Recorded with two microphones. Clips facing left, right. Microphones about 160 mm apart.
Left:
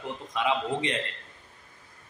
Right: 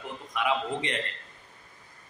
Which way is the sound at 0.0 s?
20° left (ahead or behind).